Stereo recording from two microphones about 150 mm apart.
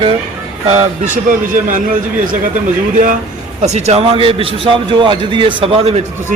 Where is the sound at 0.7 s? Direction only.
50° right (ahead or behind); by 2.5 s 65° right (ahead or behind).